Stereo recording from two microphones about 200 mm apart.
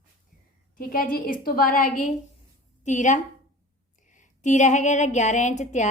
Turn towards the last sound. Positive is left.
turn(degrees=35)  # may be behind; listen again after turning